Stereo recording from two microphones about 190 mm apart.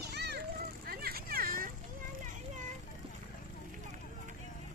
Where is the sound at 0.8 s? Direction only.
50° right (ahead or behind).